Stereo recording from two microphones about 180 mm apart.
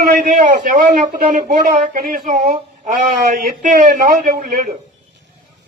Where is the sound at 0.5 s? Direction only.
45° right (ahead or behind).